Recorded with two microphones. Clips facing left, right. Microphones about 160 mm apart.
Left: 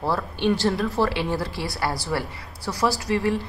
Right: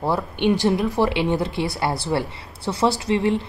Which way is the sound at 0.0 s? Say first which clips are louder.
Right 2 dB; 20° right (ahead or behind).